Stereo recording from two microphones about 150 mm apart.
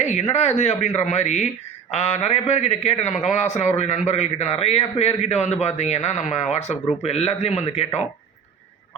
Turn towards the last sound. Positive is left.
turn(degrees=45)  # may be behind; listen again after turning